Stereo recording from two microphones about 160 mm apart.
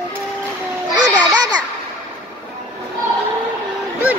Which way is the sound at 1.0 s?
25° right (ahead or behind).